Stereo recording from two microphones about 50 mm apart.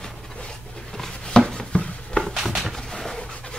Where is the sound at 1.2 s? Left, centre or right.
Centre.